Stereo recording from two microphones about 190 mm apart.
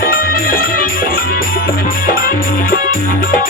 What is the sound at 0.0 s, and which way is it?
Music, 50° left (ahead or behind).